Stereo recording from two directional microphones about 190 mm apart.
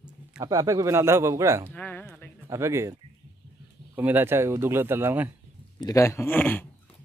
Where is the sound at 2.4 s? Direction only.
15° right (ahead or behind).